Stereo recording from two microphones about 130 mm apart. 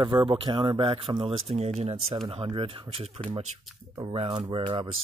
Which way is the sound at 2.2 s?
45° right (ahead or behind).